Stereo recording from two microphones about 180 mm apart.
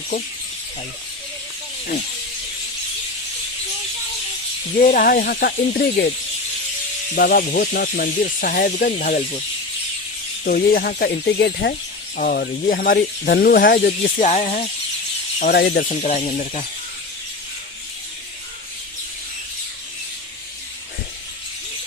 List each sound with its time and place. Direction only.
4.8 s speech: 50° left (ahead or behind)
7.2 s speech: 55° left (ahead or behind)
10.4 s speech: 55° left (ahead or behind)
12.1 s speech: 50° left (ahead or behind)
15.4 s speech: 55° left (ahead or behind)
15.9 s speech: 40° left (ahead or behind)